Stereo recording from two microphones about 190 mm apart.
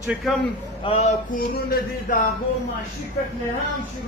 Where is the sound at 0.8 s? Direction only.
35° left (ahead or behind); by 2.2 s 50° left (ahead or behind).